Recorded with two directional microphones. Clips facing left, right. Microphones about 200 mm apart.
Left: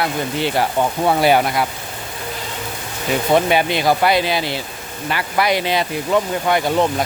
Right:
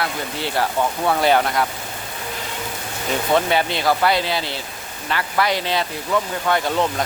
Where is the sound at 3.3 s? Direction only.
15° left (ahead or behind).